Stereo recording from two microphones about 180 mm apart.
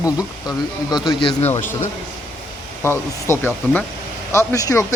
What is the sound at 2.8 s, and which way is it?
Speech, 10° left (ahead or behind).